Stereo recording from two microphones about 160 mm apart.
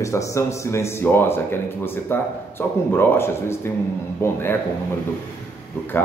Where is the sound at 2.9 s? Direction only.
15° left (ahead or behind).